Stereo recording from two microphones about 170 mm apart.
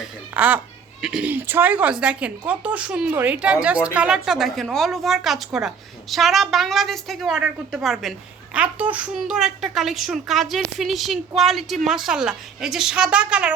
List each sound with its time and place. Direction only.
0.0 s a woman's voice: 10° right (ahead or behind)